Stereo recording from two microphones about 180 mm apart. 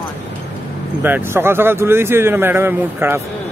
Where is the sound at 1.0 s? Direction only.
10° right (ahead or behind).